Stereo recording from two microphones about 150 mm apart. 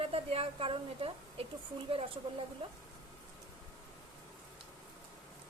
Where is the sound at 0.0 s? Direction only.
40° right (ahead or behind).